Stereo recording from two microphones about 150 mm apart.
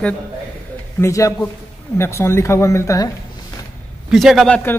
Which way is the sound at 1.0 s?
20° left (ahead or behind).